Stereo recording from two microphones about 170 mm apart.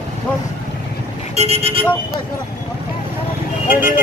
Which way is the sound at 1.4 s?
35° right (ahead or behind).